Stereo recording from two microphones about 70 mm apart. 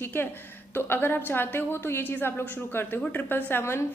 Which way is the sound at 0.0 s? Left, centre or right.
Left.